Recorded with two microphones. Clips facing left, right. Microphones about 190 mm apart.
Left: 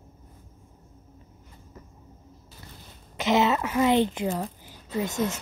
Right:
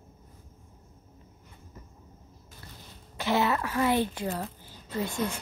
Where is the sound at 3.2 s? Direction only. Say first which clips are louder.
Left 4 dB; 20° left (ahead or behind).